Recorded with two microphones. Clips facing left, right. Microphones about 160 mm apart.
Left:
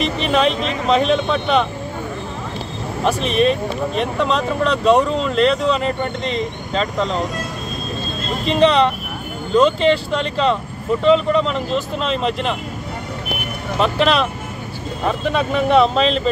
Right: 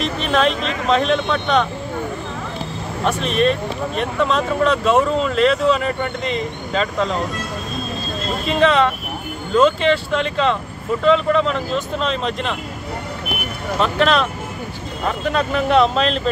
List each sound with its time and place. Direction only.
0.0 s speech: centre (ahead or behind)
3.1 s speech: centre (ahead or behind)
8.5 s speech: centre (ahead or behind)
13.7 s speech: centre (ahead or behind)